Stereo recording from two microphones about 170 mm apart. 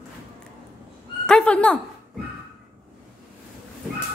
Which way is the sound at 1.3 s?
5° left (ahead or behind).